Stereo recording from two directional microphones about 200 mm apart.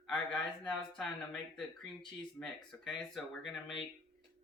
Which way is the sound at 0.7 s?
Centre (ahead or behind).